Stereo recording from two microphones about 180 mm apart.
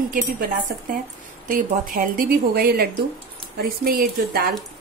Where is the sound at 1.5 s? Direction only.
50° right (ahead or behind).